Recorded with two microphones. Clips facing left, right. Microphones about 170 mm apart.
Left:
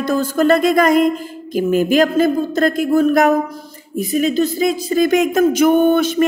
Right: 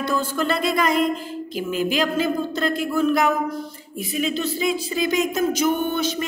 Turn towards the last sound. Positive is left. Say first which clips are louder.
# left 10 dB
turn(degrees=55)  # may be behind; listen again after turning